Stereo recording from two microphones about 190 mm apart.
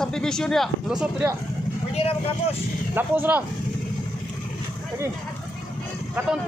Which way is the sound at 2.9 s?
10° right (ahead or behind).